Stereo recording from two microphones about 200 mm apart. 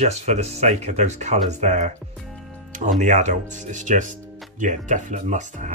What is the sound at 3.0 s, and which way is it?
Speech, 35° right (ahead or behind).